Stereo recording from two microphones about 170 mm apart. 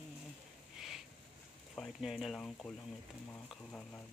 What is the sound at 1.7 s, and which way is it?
Speech, centre (ahead or behind).